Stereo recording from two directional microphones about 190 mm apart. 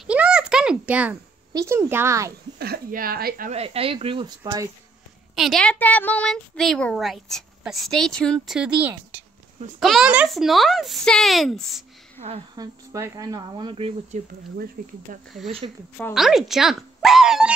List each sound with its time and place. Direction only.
0.0 s a sound: 5° right (ahead or behind)
1.5 s speech: 15° right (ahead or behind)
2.6 s speech: 50° right (ahead or behind)
3.5 s speech: 30° right (ahead or behind)
5.3 s speech: centre (ahead or behind)
12.5 s speech: 15° right (ahead or behind)
14.8 s speech: 45° right (ahead or behind)
15.6 s speech: 30° right (ahead or behind)
16.1 s speech: centre (ahead or behind)